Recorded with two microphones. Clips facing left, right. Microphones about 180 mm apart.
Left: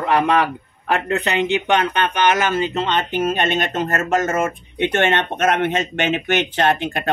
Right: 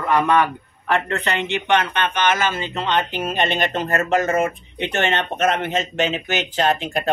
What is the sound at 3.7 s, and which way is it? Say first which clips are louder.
Speech: even; 45° left (ahead or behind).